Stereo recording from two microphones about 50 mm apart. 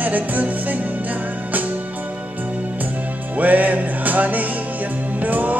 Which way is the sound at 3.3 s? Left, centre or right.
Right.